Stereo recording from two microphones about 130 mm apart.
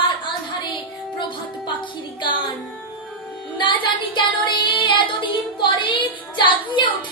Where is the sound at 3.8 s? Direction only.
40° left (ahead or behind).